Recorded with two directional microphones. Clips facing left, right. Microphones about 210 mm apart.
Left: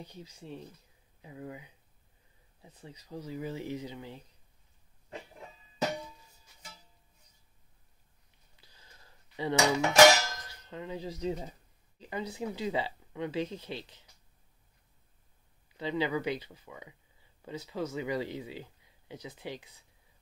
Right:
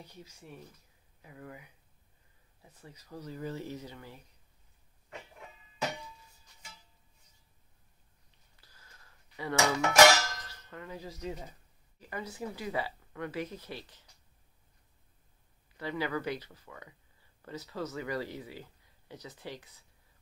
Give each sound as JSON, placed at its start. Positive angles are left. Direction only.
{"t": 0.1, "sound": "speech", "side_deg": 25}
{"t": 8.5, "sound": "a sound", "side_deg": 20}
{"t": 9.8, "sound": "speech", "side_deg": 20}
{"t": 15.8, "sound": "speech", "side_deg": 20}